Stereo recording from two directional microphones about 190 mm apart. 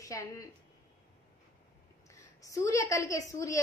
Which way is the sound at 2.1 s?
15° left (ahead or behind).